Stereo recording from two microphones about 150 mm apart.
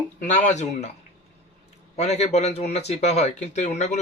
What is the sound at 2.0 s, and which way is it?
Speech, 45° left (ahead or behind).